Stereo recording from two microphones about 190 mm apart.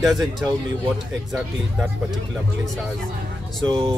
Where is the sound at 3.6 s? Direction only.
20° right (ahead or behind).